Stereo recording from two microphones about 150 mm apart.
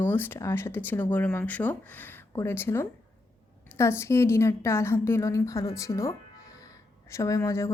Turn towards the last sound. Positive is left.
turn(degrees=20)  # may be behind; listen again after turning